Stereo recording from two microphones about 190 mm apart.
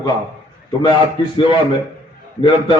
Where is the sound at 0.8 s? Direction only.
25° left (ahead or behind).